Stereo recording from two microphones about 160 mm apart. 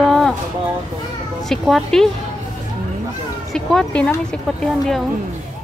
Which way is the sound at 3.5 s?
5° left (ahead or behind).